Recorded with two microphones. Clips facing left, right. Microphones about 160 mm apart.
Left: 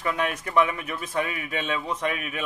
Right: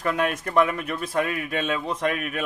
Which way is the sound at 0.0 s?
50° right (ahead or behind).